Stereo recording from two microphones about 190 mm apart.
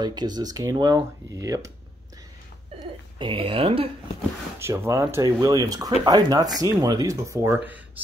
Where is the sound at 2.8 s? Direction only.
25° right (ahead or behind).